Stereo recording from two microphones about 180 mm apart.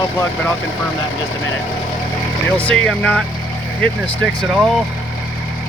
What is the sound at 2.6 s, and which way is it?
Speech, 5° left (ahead or behind).